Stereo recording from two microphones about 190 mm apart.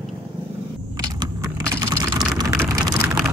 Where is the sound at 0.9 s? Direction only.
20° right (ahead or behind).